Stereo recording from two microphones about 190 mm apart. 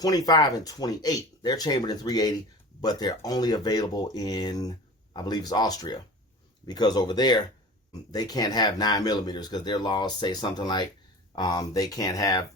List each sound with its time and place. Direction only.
0.0 s speech: 20° left (ahead or behind)